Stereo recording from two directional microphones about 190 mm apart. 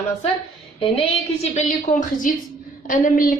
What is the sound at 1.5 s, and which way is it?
Speech, 40° left (ahead or behind).